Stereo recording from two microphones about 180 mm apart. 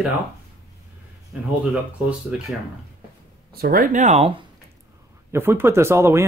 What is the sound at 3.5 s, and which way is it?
Speech, 55° right (ahead or behind).